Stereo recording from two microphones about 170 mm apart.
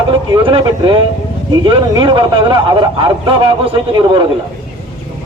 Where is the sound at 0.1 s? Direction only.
30° right (ahead or behind).